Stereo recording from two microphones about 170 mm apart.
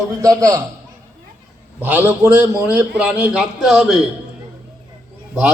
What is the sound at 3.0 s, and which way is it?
A man's voice, 5° right (ahead or behind).